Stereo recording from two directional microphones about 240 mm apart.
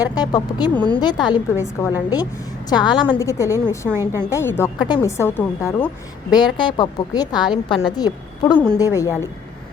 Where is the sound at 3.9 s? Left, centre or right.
Centre.